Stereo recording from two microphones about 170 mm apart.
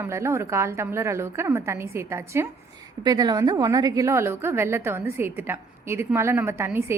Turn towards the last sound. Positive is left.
turn(degrees=-15)  # may be behind; listen again after turning